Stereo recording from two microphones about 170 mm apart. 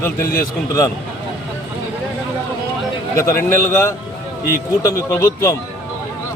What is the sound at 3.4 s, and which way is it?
Speech, 15° left (ahead or behind).